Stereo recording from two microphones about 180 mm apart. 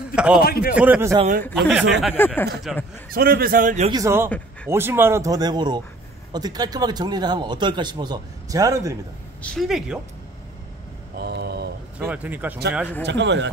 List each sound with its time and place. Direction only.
0.1 s a man's voice: 5° right (ahead or behind)
0.4 s speech: 55° left (ahead or behind)
0.7 s speech: 10° right (ahead or behind)
2.1 s speech: 10° left (ahead or behind)
2.7 s speech: centre (ahead or behind)
3.1 s a man's voice: 55° right (ahead or behind)
3.9 s speech: 15° right (ahead or behind)
9.4 s speech: 5° left (ahead or behind)
11.1 s mantra: 60° right (ahead or behind)
12.0 s speech: 10° right (ahead or behind)
13.0 s speech: 75° right (ahead or behind)